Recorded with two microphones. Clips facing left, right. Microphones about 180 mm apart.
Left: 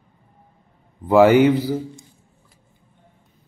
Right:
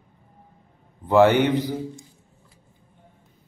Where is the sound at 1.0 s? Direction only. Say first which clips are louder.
Left 4 dB; 10° left (ahead or behind).